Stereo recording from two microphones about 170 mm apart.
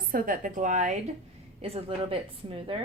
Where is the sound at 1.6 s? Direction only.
35° right (ahead or behind).